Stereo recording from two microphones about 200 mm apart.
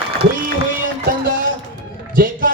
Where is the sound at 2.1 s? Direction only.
45° right (ahead or behind).